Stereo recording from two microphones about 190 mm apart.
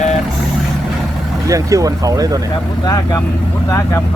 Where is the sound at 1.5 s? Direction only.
15° right (ahead or behind).